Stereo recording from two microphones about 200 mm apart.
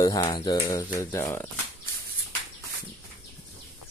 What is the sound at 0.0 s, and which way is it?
Speech, 20° left (ahead or behind).